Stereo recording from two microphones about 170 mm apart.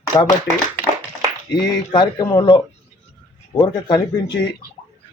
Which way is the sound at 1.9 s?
25° left (ahead or behind).